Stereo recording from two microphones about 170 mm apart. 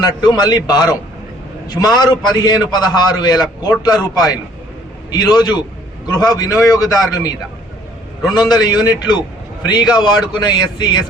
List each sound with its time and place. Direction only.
0.0 s a man's voice: 25° left (ahead or behind)